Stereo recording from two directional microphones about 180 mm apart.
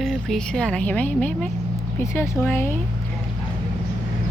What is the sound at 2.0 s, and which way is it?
Speech, 15° left (ahead or behind).